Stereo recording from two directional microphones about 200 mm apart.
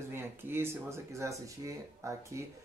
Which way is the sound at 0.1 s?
10° right (ahead or behind).